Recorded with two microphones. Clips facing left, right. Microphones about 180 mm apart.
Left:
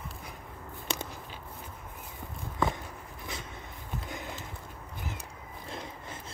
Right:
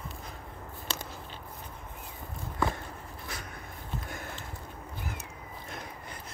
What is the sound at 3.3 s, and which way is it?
Dog, 25° left (ahead or behind).